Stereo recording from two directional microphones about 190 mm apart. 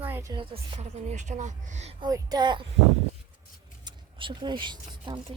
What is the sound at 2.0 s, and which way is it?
Speech, 20° right (ahead or behind).